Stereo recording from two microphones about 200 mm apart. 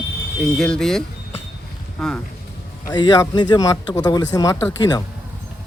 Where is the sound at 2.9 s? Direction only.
20° left (ahead or behind).